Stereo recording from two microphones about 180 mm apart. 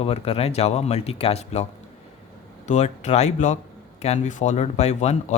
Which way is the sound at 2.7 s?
40° left (ahead or behind).